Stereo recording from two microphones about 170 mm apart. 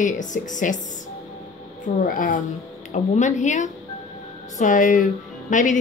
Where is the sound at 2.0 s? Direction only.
55° left (ahead or behind).